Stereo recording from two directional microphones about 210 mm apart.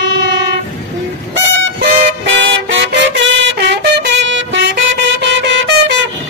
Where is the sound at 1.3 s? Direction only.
55° right (ahead or behind).